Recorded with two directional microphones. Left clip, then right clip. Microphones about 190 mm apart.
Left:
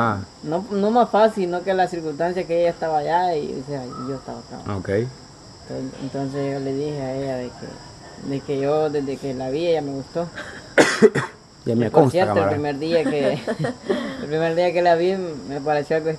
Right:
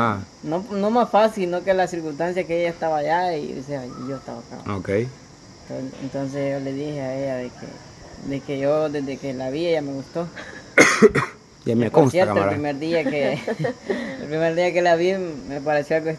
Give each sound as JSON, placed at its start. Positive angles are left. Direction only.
{"t": 0.0, "sound": "speech", "side_deg": -10}
{"t": 0.7, "sound": "speech", "side_deg": -20}
{"t": 4.6, "sound": "speech", "side_deg": -10}
{"t": 6.1, "sound": "speech", "side_deg": -20}
{"t": 10.7, "sound": "cough", "side_deg": -25}
{"t": 11.6, "sound": "speech", "side_deg": -15}